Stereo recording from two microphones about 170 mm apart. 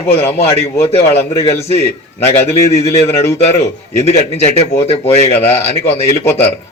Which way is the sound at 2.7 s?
35° left (ahead or behind).